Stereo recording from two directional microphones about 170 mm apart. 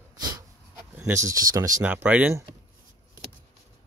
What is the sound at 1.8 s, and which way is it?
Speech, 10° right (ahead or behind).